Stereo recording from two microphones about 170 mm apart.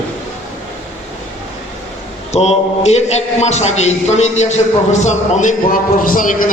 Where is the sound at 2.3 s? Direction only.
40° left (ahead or behind).